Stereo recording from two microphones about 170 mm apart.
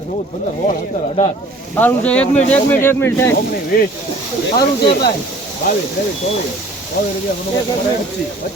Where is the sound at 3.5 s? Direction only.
60° left (ahead or behind).